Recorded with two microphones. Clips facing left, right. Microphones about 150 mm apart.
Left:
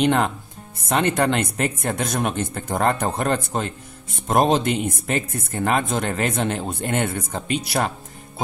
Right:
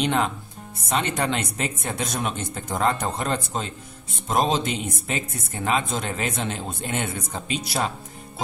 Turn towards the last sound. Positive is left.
turn(degrees=60)  # may be behind; listen again after turning